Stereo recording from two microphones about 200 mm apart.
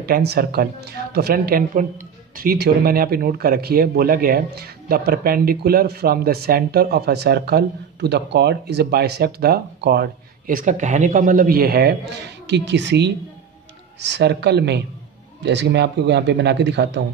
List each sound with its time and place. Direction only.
0.0 s a woman's voice: 50° right (ahead or behind)